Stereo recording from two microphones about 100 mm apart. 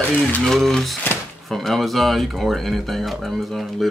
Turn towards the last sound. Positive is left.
turn(degrees=0)  # may be behind; listen again after turning